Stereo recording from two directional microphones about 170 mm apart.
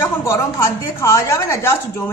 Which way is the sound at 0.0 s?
15° left (ahead or behind).